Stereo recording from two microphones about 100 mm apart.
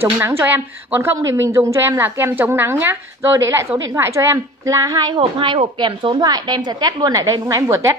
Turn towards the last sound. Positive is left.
turn(degrees=-30)  # may be behind; listen again after turning